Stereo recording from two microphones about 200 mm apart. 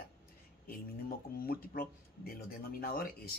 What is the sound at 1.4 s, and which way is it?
Speech, 45° left (ahead or behind).